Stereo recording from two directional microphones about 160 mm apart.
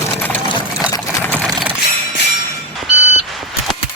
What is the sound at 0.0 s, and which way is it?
Sewing machine, 10° left (ahead or behind).